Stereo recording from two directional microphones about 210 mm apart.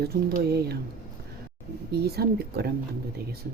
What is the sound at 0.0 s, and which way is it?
Speech, 50° right (ahead or behind).